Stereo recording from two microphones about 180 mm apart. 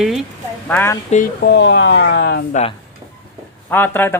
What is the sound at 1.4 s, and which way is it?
Speech, 75° left (ahead or behind).